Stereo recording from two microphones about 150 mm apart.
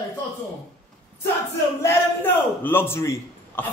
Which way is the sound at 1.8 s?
15° left (ahead or behind).